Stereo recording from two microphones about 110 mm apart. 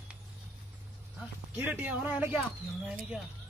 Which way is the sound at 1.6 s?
15° right (ahead or behind).